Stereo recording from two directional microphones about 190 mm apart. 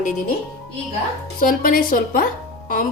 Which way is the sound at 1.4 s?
50° left (ahead or behind).